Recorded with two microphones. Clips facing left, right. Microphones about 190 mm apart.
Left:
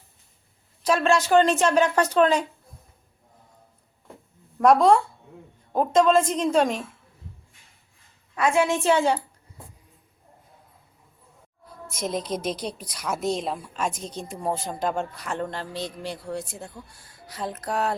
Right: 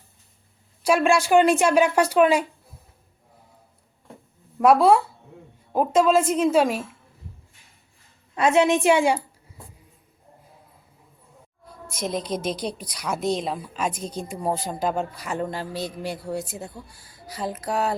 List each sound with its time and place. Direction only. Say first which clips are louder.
0.8 s a woman's voice: right 2 dB; 10° right (ahead or behind)
4.5 s a woman's voice: right 1 dB; 5° right (ahead or behind)
8.4 s a woman's voice: right 3 dB; 20° right (ahead or behind)
12.5 s a man's voice: right 3 dB; centre (ahead or behind)